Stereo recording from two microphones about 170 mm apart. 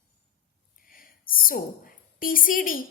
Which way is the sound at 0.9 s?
55° left (ahead or behind).